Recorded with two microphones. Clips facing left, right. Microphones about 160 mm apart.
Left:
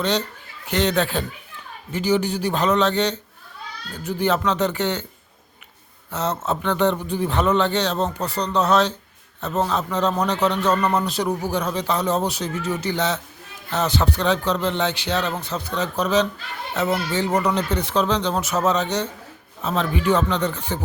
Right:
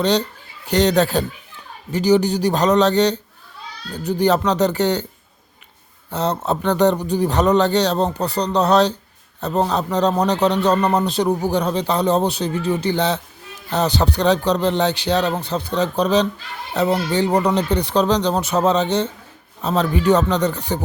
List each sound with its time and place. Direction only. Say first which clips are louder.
0.7 s a man's voice: right 5 dB; 35° right (ahead or behind)
6.1 s a man's voice: right 3 dB; 35° right (ahead or behind)